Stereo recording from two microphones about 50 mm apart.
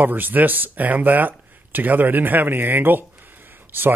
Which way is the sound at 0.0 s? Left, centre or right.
Right.